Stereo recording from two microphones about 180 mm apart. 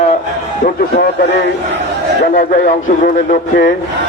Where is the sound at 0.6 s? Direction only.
55° left (ahead or behind).